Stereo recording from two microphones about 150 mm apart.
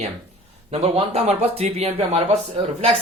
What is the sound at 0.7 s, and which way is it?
A man's voice, 40° right (ahead or behind).